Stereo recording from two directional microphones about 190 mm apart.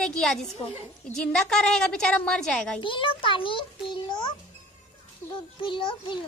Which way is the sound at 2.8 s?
25° left (ahead or behind).